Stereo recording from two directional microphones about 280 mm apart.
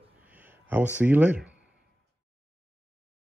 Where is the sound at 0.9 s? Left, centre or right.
Centre.